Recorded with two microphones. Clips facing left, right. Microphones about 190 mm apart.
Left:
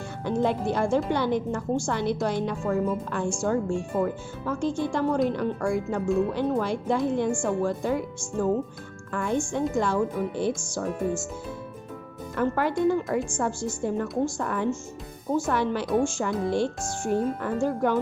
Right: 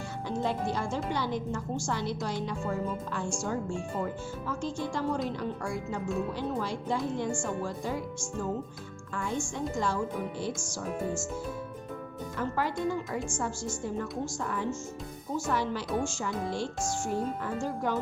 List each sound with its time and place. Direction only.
0.3 s a woman's voice: 60° left (ahead or behind)
12.4 s a woman's voice: 60° left (ahead or behind)